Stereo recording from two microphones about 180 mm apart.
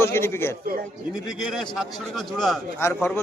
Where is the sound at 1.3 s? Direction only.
5° right (ahead or behind).